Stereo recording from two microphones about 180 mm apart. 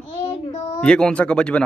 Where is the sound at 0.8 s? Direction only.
5° left (ahead or behind).